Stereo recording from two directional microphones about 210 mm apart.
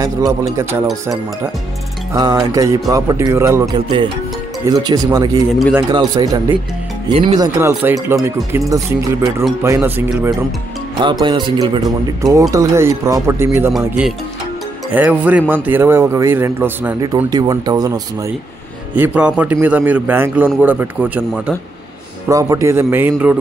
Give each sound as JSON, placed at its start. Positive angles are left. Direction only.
{"t": 0.0, "sound": "speech", "side_deg": -15}
{"t": 2.1, "sound": "speech", "side_deg": -20}
{"t": 5.6, "sound": "speech", "side_deg": 0}
{"t": 5.9, "sound": "speech", "side_deg": -20}
{"t": 11.0, "sound": "speech", "side_deg": -20}
{"t": 13.7, "sound": "speech", "side_deg": 0}
{"t": 18.9, "sound": "speech", "side_deg": -5}